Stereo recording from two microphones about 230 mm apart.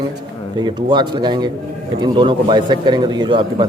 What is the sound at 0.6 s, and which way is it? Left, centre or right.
A man's voice, centre.